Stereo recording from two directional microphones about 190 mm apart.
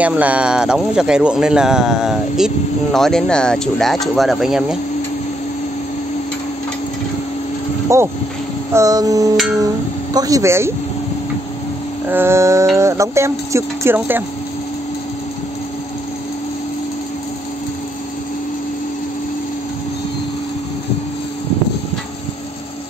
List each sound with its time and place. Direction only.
0.0 s speech: 10° right (ahead or behind)
7.9 s speech: 15° right (ahead or behind)
12.1 s speech: 10° right (ahead or behind)